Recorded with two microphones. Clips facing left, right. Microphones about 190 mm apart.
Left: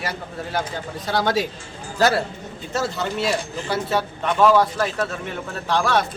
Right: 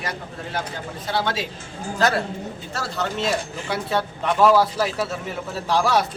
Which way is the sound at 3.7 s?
Centre (ahead or behind).